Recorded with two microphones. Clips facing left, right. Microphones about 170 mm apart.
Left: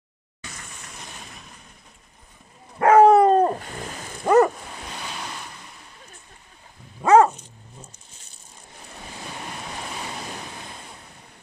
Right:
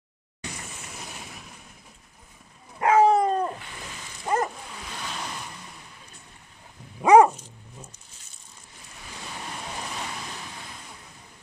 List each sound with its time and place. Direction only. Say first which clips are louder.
0.7 s vehicle: right 1 dB; 5° right (ahead or behind)
2.8 s dog: left 6 dB; 55° left (ahead or behind)
7.0 s dog: even; 10° right (ahead or behind)